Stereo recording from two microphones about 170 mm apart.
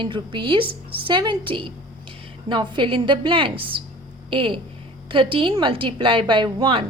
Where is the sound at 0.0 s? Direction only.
30° right (ahead or behind).